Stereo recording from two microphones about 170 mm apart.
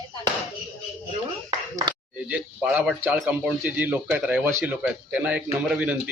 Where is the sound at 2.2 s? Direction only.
10° right (ahead or behind).